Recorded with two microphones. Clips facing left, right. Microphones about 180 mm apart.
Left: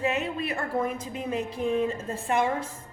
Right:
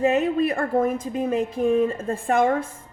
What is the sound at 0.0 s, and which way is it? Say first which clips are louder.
A woman's voice: right 8 dB; 45° right (ahead or behind).